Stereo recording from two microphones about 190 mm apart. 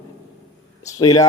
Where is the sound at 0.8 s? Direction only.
20° left (ahead or behind).